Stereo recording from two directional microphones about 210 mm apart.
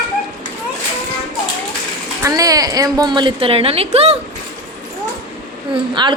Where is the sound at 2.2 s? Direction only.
15° right (ahead or behind).